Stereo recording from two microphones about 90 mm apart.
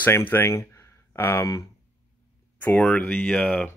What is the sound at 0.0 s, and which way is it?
Speech, 25° left (ahead or behind).